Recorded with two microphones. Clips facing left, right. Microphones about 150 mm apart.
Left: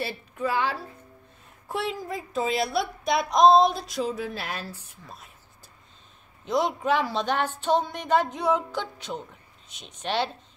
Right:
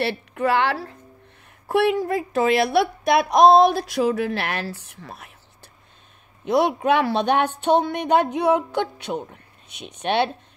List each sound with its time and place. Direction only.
0.0 s a woman's voice: 70° right (ahead or behind)
6.4 s speech: 65° right (ahead or behind)